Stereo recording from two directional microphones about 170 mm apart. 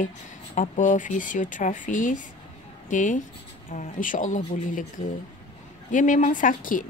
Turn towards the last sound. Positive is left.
turn(degrees=50)  # may be behind; listen again after turning